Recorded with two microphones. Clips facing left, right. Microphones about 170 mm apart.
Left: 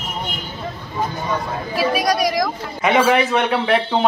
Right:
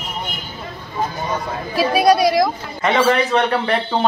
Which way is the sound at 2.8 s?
5° left (ahead or behind).